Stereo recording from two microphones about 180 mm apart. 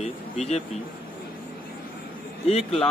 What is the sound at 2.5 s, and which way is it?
Speech, centre (ahead or behind).